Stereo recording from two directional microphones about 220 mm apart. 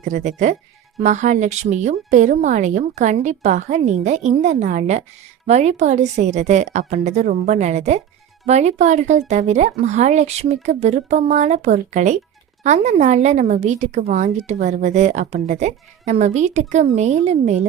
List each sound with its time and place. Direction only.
0.0 s a woman's voice: 35° right (ahead or behind)